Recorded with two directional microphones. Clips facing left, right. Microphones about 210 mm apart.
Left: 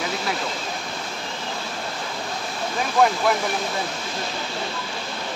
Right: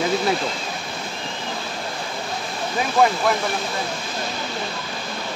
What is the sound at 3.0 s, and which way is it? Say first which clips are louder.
Speech: right 1 dB; centre (ahead or behind).